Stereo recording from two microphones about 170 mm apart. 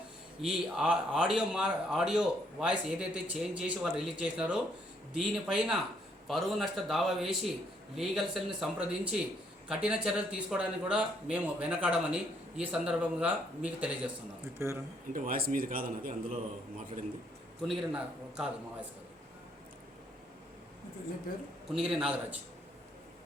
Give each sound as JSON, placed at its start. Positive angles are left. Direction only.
{"t": 0.4, "sound": "a man's voice", "side_deg": -5}
{"t": 15.1, "sound": "speech", "side_deg": -55}
{"t": 17.7, "sound": "a man's voice", "side_deg": -5}
{"t": 21.7, "sound": "a man's voice", "side_deg": -5}